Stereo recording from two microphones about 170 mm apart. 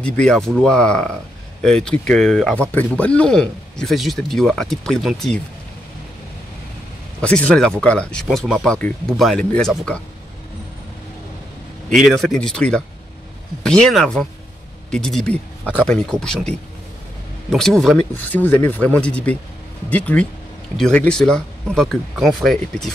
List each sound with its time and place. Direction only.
0.0 s speech: 5° left (ahead or behind)
7.2 s speech: 5° left (ahead or behind)
11.9 s speech: centre (ahead or behind)